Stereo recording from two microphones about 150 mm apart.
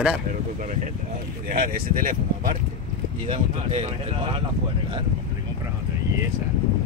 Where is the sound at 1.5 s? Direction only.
65° right (ahead or behind).